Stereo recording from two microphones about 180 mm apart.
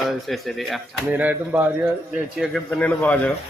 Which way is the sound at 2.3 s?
5° left (ahead or behind).